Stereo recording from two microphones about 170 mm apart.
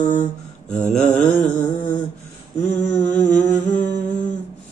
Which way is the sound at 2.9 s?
10° left (ahead or behind).